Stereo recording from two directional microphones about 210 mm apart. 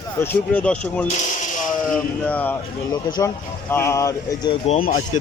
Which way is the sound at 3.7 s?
15° left (ahead or behind).